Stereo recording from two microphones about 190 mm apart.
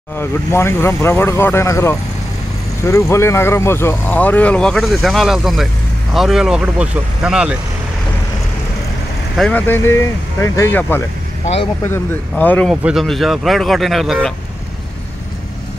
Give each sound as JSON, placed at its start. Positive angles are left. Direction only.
{"t": 0.2, "sound": "speech", "side_deg": 15}
{"t": 9.4, "sound": "speech", "side_deg": 10}